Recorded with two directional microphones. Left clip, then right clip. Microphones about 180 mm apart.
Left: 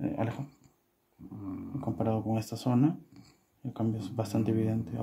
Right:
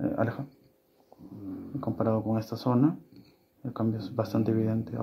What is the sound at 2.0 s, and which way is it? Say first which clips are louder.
Speech: right 4 dB; 20° left (ahead or behind).